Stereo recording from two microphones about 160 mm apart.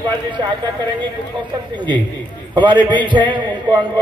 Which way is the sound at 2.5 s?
30° right (ahead or behind).